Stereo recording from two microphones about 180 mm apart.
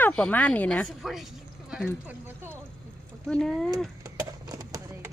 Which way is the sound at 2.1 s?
10° right (ahead or behind).